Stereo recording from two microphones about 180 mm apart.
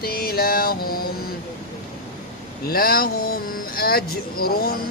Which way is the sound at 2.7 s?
55° left (ahead or behind).